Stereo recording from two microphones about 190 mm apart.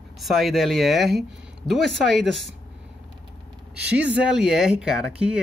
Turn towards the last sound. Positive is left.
turn(degrees=-5)  # may be behind; listen again after turning